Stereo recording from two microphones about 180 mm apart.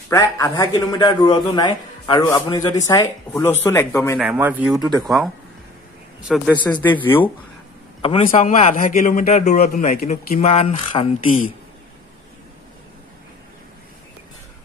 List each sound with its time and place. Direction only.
0.1 s a man's voice: 15° left (ahead or behind)
4.2 s speech: 10° right (ahead or behind)
6.8 s speech: 10° left (ahead or behind)
8.0 s a man's voice: 35° left (ahead or behind); by 10.4 s 50° left (ahead or behind)
10.4 s a man's voice: 35° left (ahead or behind)